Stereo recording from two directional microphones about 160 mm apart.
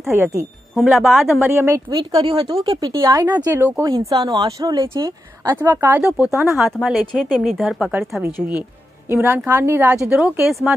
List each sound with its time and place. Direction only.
0.1 s speech: 15° right (ahead or behind)
0.7 s speech: centre (ahead or behind)
1.5 s speech: 15° right (ahead or behind)
2.0 s speech: 25° right (ahead or behind)
3.3 s speech: 10° right (ahead or behind)
6.5 s speech: centre (ahead or behind)